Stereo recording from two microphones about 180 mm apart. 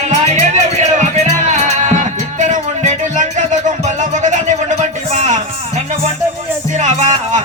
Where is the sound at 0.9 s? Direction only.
40° right (ahead or behind).